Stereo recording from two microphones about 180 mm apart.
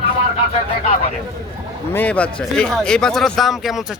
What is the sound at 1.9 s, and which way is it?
Speech, 10° left (ahead or behind).